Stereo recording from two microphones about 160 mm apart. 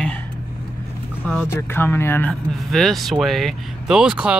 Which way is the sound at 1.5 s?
15° left (ahead or behind).